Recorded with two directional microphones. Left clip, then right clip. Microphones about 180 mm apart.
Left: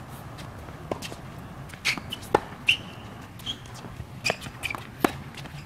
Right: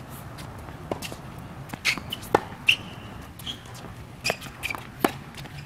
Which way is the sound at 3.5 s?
5° left (ahead or behind).